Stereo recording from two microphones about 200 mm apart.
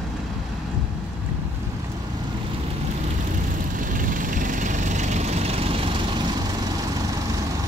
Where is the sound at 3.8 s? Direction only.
40° right (ahead or behind).